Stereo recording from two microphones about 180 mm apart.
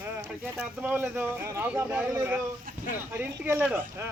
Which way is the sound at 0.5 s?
10° right (ahead or behind).